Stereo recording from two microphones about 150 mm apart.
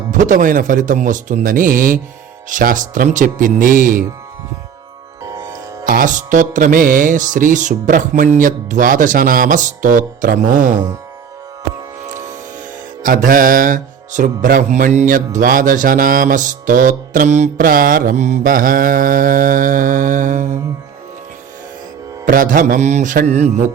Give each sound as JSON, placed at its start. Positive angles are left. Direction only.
{"t": 0.1, "sound": "mantra", "side_deg": -60}
{"t": 2.5, "sound": "mantra", "side_deg": -60}
{"t": 5.8, "sound": "mantra", "side_deg": -70}
{"t": 13.0, "sound": "mantra", "side_deg": -65}
{"t": 22.3, "sound": "mantra", "side_deg": -65}